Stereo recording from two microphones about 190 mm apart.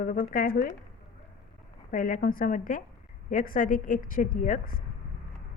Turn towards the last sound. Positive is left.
turn(degrees=45)  # may be behind; listen again after turning